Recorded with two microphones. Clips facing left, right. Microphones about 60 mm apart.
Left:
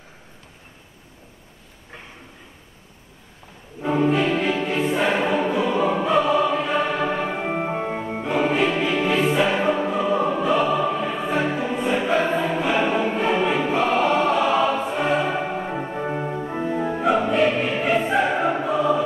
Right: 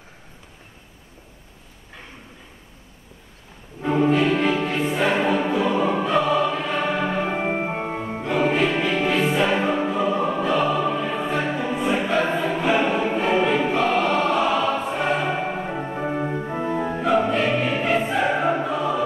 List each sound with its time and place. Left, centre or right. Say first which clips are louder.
3.8 s music: right 1 dB; centre
6.3 s choir: left 2 dB; centre
7.2 s music: right 2 dB; centre
7.5 s music: left 1 dB; centre
11.7 s music: right 2 dB; centre
12.0 s choir: left 1 dB; centre
12.6 s music: right 3 dB; centre
16.3 s organ: even; centre
17.0 s music: left 1 dB; centre